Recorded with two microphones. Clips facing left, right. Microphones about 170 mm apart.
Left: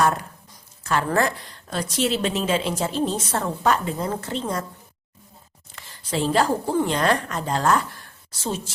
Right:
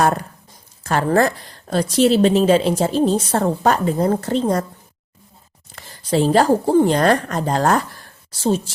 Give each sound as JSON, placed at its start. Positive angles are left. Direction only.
{"t": 0.0, "sound": "a woman's voice", "side_deg": -40}
{"t": 5.7, "sound": "a woman's voice", "side_deg": -40}